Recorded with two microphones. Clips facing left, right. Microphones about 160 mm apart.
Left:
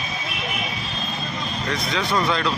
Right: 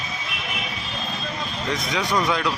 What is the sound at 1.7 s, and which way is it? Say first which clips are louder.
Speech: even; 15° right (ahead or behind).